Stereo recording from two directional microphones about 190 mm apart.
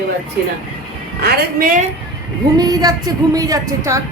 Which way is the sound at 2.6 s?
20° right (ahead or behind).